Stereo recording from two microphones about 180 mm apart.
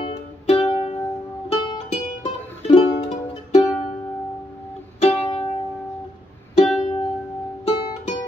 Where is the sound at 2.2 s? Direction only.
30° left (ahead or behind).